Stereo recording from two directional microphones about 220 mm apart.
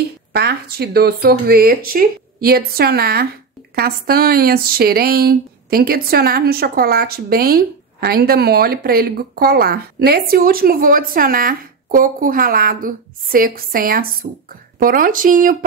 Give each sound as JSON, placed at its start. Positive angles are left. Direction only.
{"t": 0.3, "sound": "speech", "side_deg": -45}